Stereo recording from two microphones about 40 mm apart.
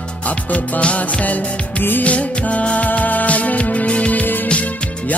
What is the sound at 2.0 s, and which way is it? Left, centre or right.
Music, left.